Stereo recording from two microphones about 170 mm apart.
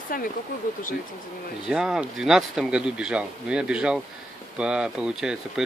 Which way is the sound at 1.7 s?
5° right (ahead or behind).